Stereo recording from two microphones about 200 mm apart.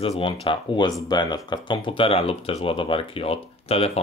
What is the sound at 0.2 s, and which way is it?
Speech, 25° left (ahead or behind).